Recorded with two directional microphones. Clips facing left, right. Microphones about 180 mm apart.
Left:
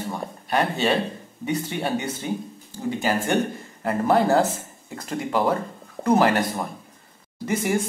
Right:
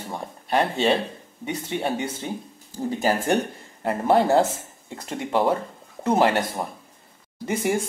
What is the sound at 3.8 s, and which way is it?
Speech, 25° right (ahead or behind).